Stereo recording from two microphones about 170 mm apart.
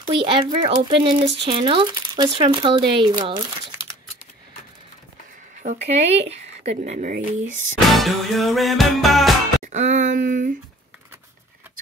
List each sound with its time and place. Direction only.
0.0 s speech: 30° right (ahead or behind)
5.6 s speech: 40° right (ahead or behind)
7.9 s music: centre (ahead or behind)
9.6 s speech: 45° right (ahead or behind)